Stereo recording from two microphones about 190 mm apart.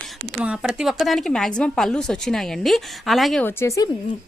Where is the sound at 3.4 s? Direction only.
15° left (ahead or behind).